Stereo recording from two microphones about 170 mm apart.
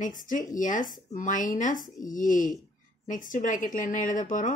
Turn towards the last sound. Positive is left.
turn(degrees=50)  # may be behind; listen again after turning